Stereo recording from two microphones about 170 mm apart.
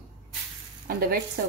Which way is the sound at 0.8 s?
60° right (ahead or behind).